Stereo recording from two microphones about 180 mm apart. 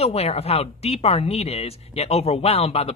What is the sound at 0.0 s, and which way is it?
Speech, 35° left (ahead or behind).